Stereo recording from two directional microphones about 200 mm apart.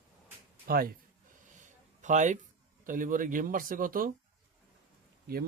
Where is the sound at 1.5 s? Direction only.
40° right (ahead or behind).